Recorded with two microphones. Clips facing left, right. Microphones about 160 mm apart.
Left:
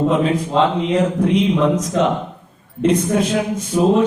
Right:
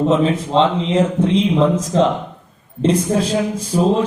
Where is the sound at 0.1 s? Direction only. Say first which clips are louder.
Right 2 dB; 25° right (ahead or behind).